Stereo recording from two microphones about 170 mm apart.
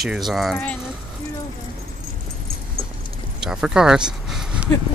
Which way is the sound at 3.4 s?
5° right (ahead or behind).